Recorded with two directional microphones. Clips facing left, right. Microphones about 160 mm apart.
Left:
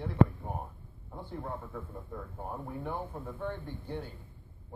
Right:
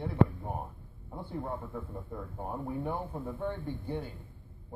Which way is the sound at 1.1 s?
10° right (ahead or behind).